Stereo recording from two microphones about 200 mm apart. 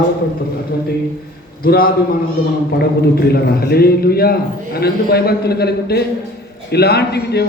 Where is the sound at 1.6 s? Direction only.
45° left (ahead or behind).